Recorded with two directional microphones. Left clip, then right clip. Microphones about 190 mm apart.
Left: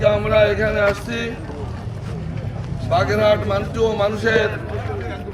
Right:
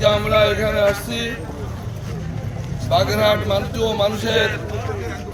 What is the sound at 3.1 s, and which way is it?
Speech, 5° right (ahead or behind).